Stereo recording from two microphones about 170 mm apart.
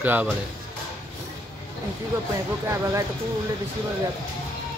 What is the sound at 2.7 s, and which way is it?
Speech, 15° right (ahead or behind).